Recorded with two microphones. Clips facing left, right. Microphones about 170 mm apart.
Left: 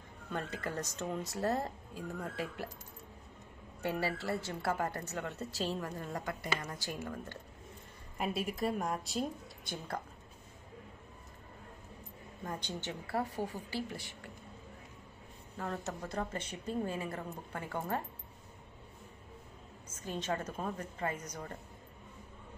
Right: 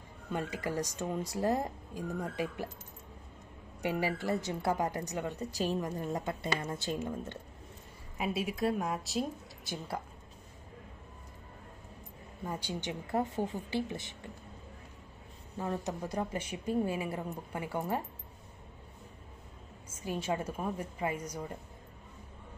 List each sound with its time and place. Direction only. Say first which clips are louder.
0.3 s a woman's voice: right 4 dB; 10° right (ahead or behind)
3.8 s a woman's voice: right 3 dB; 15° right (ahead or behind)
8.2 s a woman's voice: right 2 dB; centre (ahead or behind)
12.4 s a woman's voice: right 3 dB; 10° right (ahead or behind)
15.5 s a woman's voice: right 4 dB; 15° right (ahead or behind)
20.0 s a woman's voice: right 3 dB; 10° right (ahead or behind)